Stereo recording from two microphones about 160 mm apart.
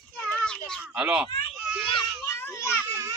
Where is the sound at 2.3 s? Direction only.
15° left (ahead or behind).